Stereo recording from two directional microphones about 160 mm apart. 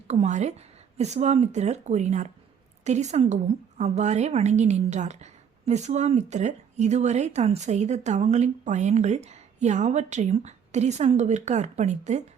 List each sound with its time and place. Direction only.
0.1 s a woman's voice: 45° right (ahead or behind)